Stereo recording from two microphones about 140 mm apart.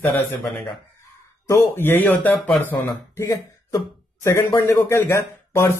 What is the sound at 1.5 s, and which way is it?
Speech, 15° left (ahead or behind).